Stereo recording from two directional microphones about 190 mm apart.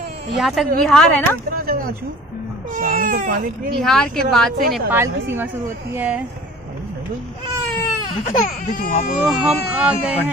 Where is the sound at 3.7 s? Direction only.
Centre (ahead or behind).